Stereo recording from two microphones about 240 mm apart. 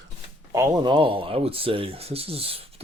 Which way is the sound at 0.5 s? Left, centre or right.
Centre.